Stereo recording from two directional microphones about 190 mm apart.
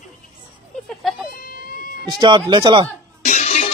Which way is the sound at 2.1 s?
25° right (ahead or behind).